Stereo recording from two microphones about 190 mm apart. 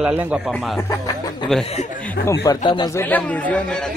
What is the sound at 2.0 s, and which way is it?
Speech, 10° left (ahead or behind).